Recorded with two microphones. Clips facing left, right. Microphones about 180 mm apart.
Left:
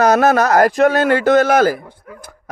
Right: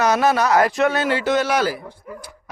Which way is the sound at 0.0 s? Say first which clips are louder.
Left 5 dB; 45° left (ahead or behind).